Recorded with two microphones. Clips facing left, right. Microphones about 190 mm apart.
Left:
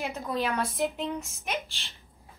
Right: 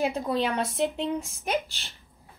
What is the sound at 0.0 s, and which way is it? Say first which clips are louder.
Speech: right 5 dB; 30° right (ahead or behind).